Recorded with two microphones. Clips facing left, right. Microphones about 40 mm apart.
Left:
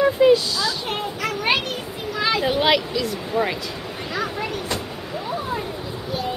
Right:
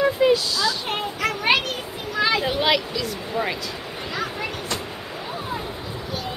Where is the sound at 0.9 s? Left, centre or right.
Centre.